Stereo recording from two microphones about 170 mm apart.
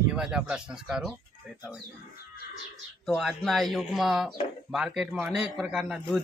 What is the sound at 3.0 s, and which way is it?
Speech, centre (ahead or behind).